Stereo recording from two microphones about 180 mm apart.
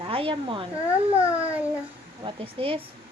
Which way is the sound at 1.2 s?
10° right (ahead or behind).